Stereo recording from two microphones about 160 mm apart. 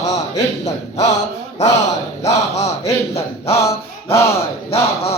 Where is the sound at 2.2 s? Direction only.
45° left (ahead or behind).